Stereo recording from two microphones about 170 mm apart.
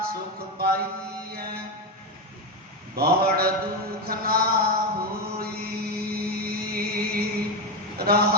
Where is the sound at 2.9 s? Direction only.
65° right (ahead or behind).